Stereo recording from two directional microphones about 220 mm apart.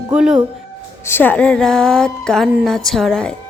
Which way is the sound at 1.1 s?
10° left (ahead or behind).